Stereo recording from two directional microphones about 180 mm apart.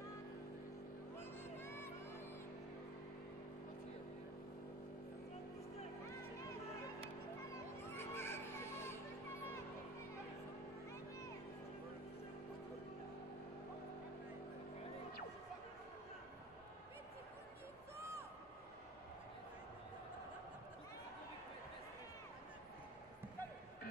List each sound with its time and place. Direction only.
1.6 s music: 15° left (ahead or behind)
7.4 s music: 15° left (ahead or behind)